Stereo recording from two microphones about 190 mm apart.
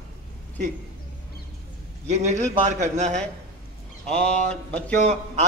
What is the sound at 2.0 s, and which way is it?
A man's voice, 35° right (ahead or behind).